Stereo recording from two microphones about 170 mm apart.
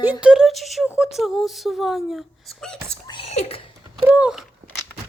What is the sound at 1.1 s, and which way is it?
Speech, centre (ahead or behind).